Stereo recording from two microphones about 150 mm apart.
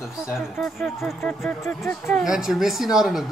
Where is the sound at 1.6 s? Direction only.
15° left (ahead or behind).